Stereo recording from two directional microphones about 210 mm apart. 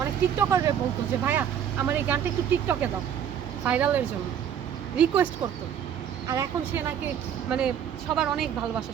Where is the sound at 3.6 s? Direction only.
5° right (ahead or behind).